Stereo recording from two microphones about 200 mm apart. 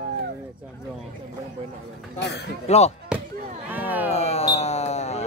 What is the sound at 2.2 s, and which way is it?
Speech, 55° left (ahead or behind).